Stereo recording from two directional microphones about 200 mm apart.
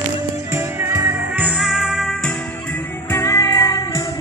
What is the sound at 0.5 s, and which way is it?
Music, 15° right (ahead or behind).